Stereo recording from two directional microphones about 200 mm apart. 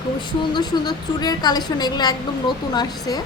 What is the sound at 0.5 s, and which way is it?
A woman's voice, 20° left (ahead or behind).